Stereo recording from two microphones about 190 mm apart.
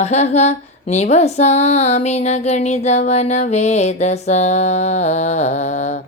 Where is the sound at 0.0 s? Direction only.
35° left (ahead or behind).